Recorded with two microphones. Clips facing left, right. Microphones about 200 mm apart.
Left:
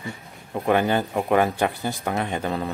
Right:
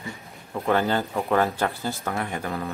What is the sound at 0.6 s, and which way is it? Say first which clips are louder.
Speech: left 2 dB; 15° left (ahead or behind).